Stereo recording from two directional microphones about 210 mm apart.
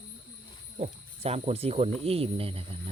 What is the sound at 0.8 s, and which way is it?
Speech, 30° right (ahead or behind).